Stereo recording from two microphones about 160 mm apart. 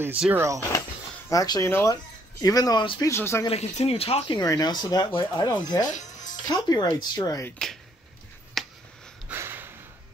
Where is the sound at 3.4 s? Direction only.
40° left (ahead or behind).